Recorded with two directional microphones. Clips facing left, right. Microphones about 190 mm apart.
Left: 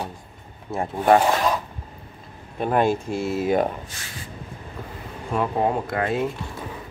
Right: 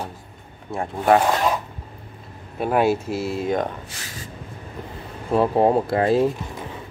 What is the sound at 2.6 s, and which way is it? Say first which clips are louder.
Speech: right 1 dB; 5° right (ahead or behind).